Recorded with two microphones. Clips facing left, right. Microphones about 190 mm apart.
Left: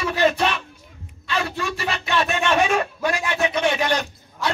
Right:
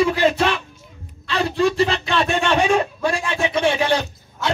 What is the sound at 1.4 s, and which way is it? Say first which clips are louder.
Speech: right 12 dB; 30° right (ahead or behind).